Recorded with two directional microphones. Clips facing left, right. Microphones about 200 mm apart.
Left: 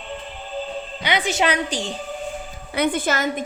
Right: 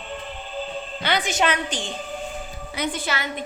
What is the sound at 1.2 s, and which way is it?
Speech, 35° left (ahead or behind).